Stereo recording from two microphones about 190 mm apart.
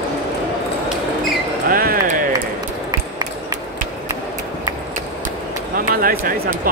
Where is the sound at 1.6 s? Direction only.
50° right (ahead or behind).